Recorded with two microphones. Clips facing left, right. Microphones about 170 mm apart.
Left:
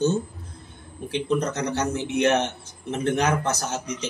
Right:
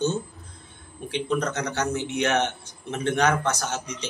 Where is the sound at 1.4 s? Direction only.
30° left (ahead or behind).